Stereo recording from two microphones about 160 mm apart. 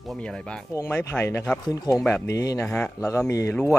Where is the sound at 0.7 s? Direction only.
15° left (ahead or behind).